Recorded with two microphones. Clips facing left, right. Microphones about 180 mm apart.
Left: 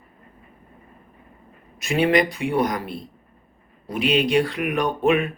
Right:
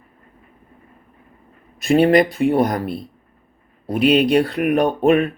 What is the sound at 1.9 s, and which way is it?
Speech, 40° right (ahead or behind).